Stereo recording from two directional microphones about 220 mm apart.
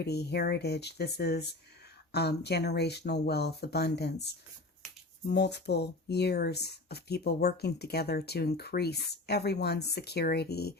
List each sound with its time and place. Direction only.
0.0 s speech: 50° left (ahead or behind)